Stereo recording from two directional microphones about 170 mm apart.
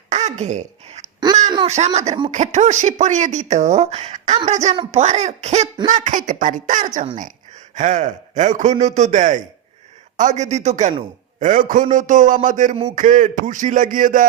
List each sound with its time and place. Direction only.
0.1 s throat clearing: 40° right (ahead or behind)
1.6 s speech: 40° right (ahead or behind)